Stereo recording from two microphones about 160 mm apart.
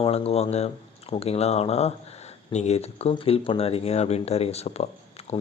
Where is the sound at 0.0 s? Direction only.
40° left (ahead or behind).